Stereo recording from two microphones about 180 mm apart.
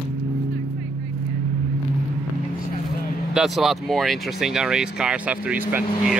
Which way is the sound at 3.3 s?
Centre (ahead or behind).